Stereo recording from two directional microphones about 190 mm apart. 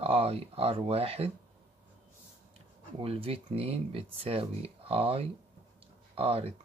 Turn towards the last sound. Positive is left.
turn(degrees=-30)  # may be behind; listen again after turning